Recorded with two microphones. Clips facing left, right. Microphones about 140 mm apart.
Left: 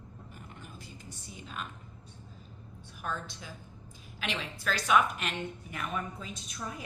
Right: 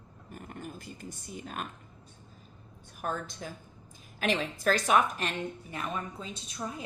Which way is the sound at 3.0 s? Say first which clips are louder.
Right 3 dB; 45° right (ahead or behind).